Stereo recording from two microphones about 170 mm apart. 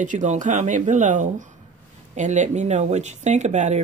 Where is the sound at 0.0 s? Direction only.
45° right (ahead or behind).